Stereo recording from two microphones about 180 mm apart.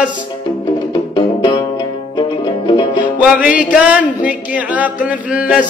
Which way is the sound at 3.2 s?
5° right (ahead or behind).